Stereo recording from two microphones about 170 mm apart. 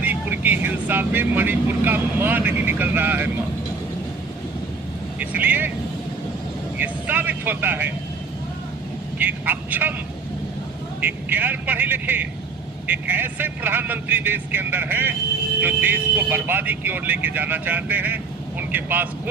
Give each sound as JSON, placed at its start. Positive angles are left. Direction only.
{"t": 0.0, "sound": "speech", "side_deg": -10}
{"t": 5.2, "sound": "speech", "side_deg": -10}
{"t": 6.7, "sound": "speech", "side_deg": -10}
{"t": 9.2, "sound": "speech", "side_deg": -10}
{"t": 11.0, "sound": "speech", "side_deg": -10}